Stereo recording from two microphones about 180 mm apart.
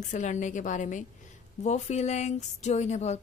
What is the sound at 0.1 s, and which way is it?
A woman's voice, 45° left (ahead or behind).